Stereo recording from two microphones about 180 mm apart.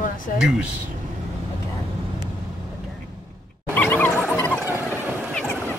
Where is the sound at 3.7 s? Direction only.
10° left (ahead or behind).